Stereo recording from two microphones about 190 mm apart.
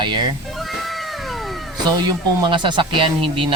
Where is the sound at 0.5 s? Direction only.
Centre (ahead or behind).